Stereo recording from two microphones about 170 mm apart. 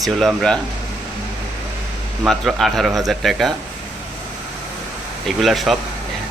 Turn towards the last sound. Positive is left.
turn(degrees=0)  # may be behind; listen again after turning